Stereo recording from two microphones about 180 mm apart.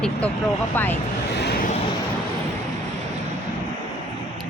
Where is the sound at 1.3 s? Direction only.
65° left (ahead or behind).